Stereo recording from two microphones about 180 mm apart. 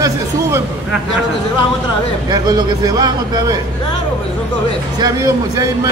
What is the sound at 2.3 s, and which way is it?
A man's voice, 20° right (ahead or behind).